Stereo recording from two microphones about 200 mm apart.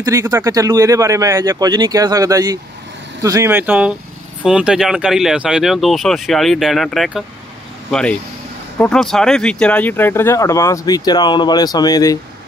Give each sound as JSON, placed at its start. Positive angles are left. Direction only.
{"t": 0.0, "sound": "speech", "side_deg": -15}